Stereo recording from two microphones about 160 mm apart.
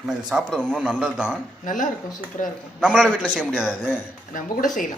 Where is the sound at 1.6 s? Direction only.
55° left (ahead or behind).